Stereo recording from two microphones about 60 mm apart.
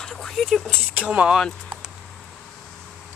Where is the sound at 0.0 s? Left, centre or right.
Centre.